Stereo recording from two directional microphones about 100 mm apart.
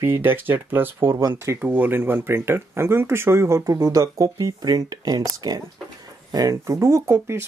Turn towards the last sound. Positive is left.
turn(degrees=-25)  # may be behind; listen again after turning